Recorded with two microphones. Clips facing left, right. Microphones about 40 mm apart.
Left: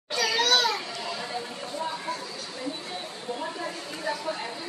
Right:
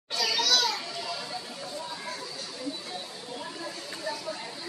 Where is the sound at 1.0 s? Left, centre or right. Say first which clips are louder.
Left 3 dB; left.